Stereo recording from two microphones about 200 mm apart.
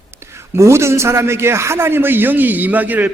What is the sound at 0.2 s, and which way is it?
A man's voice, 15° right (ahead or behind).